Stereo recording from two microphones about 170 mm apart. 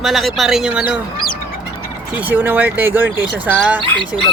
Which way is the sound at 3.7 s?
30° right (ahead or behind).